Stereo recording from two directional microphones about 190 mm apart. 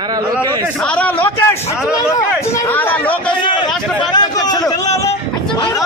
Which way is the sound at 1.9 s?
15° left (ahead or behind).